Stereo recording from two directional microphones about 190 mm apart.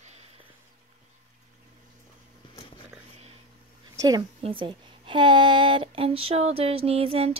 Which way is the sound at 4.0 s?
20° right (ahead or behind).